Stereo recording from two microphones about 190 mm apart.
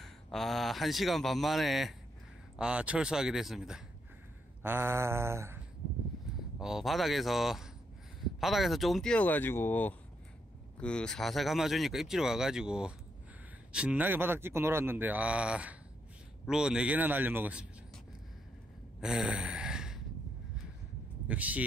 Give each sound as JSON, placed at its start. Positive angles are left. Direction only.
{"t": 0.0, "sound": "speech", "side_deg": 0}
{"t": 6.6, "sound": "speech", "side_deg": 0}
{"t": 18.9, "sound": "gasp", "side_deg": 0}
{"t": 21.3, "sound": "speech", "side_deg": -5}